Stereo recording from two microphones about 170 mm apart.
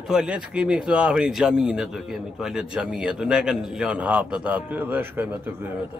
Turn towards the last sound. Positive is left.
turn(degrees=-10)  # may be behind; listen again after turning